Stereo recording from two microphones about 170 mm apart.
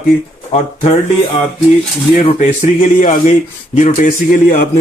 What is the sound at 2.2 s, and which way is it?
Speech, 45° left (ahead or behind).